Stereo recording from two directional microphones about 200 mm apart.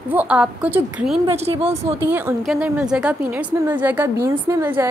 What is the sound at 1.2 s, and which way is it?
Speech, 30° right (ahead or behind).